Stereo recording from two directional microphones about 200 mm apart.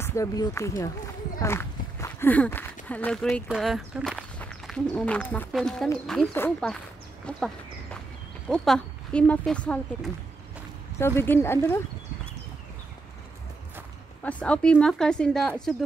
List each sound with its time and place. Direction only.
0.0 s speech: 15° left (ahead or behind)
7.2 s a sound: 5° left (ahead or behind)
8.5 s speech: 5° left (ahead or behind)
14.2 s speech: 5° left (ahead or behind)